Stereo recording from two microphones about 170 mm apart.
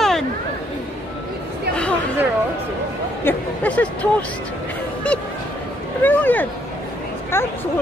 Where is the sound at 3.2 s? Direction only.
10° left (ahead or behind).